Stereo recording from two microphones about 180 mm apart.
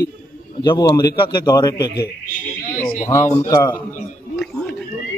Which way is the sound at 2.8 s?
50° left (ahead or behind).